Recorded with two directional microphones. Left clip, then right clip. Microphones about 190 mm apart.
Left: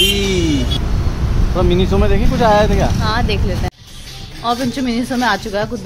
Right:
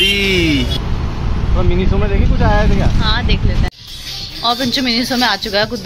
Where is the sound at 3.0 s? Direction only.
35° left (ahead or behind).